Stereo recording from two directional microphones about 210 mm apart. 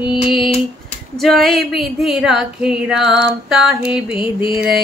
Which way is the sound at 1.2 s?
Centre (ahead or behind).